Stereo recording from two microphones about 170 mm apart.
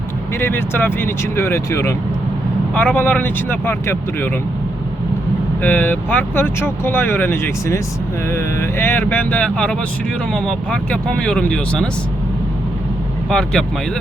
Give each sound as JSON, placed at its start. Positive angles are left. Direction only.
{"t": 0.3, "sound": "speech", "side_deg": 15}
{"t": 5.6, "sound": "speech", "side_deg": 10}
{"t": 13.3, "sound": "speech", "side_deg": 5}